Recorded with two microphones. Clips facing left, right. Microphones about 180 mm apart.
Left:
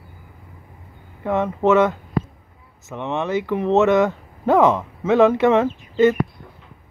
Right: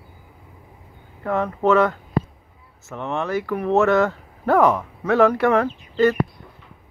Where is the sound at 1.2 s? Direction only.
20° left (ahead or behind).